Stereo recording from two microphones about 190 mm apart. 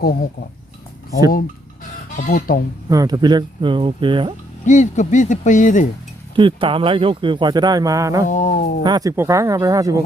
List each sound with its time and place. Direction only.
0.0 s speech: 50° left (ahead or behind)
2.1 s speech: 45° left (ahead or behind)
2.9 s speech: 20° right (ahead or behind)
4.6 s speech: 40° left (ahead or behind)
6.3 s speech: 25° right (ahead or behind)
8.3 s speech: 45° left (ahead or behind)
8.8 s speech: 20° right (ahead or behind)